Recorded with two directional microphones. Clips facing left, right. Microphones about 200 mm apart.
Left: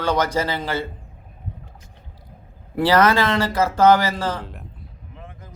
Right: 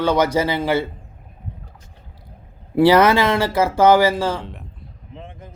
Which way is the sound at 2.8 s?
10° right (ahead or behind).